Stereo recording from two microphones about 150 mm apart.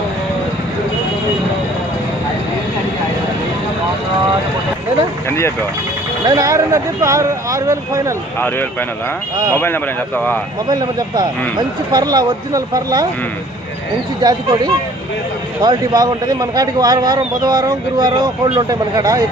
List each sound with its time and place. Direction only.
6.2 s speech: 25° right (ahead or behind)
8.4 s speech: 15° left (ahead or behind)
10.7 s speech: 25° right (ahead or behind)
14.2 s speech: 30° right (ahead or behind)